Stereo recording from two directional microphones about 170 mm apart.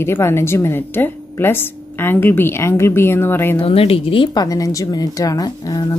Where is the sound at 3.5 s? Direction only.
35° left (ahead or behind).